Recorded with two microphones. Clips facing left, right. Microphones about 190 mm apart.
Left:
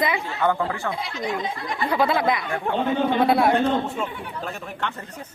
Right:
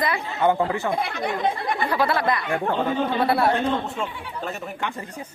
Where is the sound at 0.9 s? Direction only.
60° right (ahead or behind).